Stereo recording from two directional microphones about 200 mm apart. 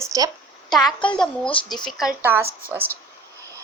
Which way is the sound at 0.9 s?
25° left (ahead or behind).